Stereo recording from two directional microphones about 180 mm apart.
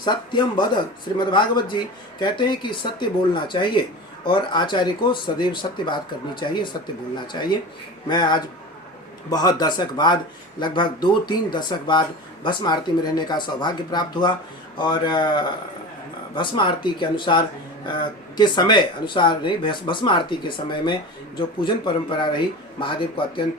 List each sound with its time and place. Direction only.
0.0 s speech: 25° left (ahead or behind)